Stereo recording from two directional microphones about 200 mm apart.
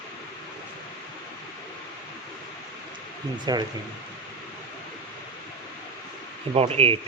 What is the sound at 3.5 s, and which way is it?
Speech, 20° right (ahead or behind).